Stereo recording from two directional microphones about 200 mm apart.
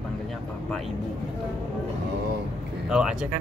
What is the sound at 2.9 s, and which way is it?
Speech, 5° right (ahead or behind).